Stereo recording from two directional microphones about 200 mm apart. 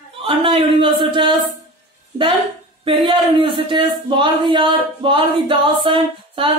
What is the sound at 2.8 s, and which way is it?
A woman's voice, 25° right (ahead or behind).